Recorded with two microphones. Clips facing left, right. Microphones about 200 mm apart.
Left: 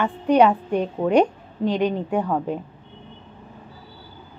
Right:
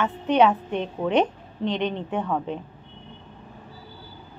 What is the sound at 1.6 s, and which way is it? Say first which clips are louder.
Speech: left 4 dB; 5° left (ahead or behind).